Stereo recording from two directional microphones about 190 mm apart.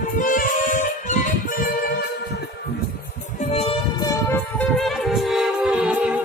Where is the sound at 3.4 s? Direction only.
35° left (ahead or behind).